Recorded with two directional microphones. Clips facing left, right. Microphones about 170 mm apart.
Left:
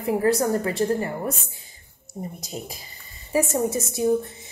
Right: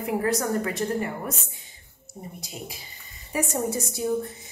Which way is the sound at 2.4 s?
40° left (ahead or behind).